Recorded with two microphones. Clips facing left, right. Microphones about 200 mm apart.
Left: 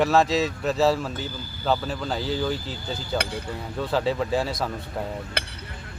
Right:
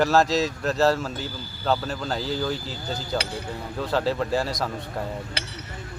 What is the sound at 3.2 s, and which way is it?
Speech, 55° left (ahead or behind).